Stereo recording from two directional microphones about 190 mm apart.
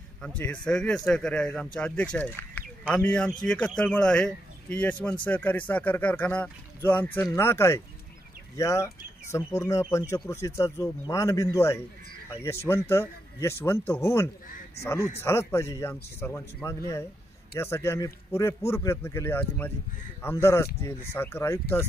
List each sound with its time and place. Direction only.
0.2 s a man's voice: 5° left (ahead or behind)